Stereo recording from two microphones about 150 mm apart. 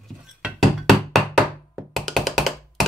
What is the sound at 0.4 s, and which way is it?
Knock, centre (ahead or behind).